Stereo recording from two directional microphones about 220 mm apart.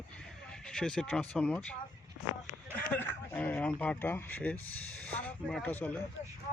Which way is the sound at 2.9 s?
10° left (ahead or behind).